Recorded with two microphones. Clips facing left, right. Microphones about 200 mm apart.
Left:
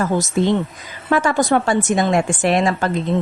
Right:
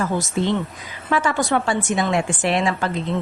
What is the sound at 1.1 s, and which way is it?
A woman's voice, 40° left (ahead or behind).